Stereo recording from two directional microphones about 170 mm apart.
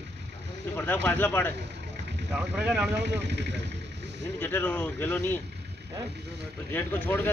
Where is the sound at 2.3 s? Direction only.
10° right (ahead or behind).